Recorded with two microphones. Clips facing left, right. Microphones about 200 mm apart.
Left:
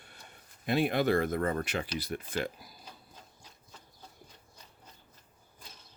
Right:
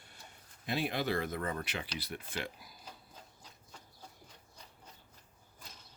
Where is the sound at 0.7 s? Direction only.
55° left (ahead or behind).